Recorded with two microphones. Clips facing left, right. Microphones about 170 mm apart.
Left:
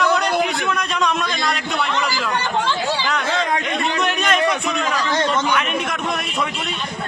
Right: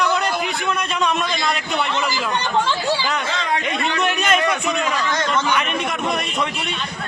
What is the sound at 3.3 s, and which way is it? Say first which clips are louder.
Speech: left 2 dB; 45° left (ahead or behind).